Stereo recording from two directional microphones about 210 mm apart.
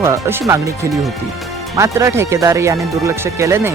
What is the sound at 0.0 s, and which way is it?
Speech, 10° right (ahead or behind).